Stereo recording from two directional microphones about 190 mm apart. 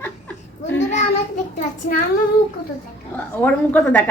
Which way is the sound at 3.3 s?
10° left (ahead or behind).